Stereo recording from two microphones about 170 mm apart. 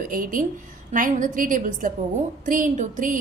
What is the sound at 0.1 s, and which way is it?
A woman's voice, 55° right (ahead or behind).